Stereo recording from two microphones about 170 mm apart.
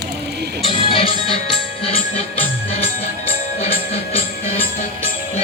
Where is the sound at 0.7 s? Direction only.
30° left (ahead or behind).